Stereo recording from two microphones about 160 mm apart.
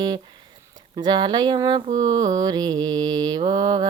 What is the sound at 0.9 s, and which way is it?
Mantra, 25° right (ahead or behind).